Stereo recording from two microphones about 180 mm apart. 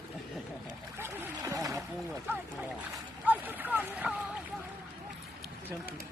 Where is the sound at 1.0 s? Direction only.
15° right (ahead or behind).